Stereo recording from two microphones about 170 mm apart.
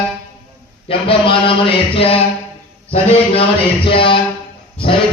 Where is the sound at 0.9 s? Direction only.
30° left (ahead or behind).